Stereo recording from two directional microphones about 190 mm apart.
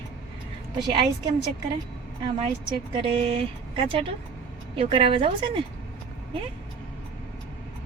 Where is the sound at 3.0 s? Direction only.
30° right (ahead or behind).